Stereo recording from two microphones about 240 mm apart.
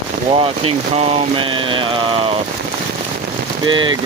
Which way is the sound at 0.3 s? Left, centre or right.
Right.